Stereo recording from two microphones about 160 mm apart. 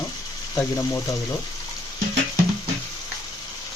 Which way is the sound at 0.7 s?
20° left (ahead or behind).